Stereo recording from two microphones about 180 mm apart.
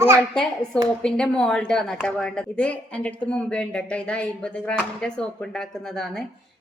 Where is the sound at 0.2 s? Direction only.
5° left (ahead or behind).